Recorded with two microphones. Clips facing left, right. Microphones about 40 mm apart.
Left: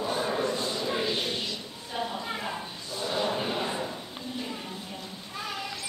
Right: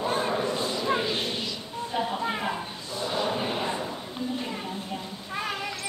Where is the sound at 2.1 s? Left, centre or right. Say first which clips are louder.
Right 5 dB; right.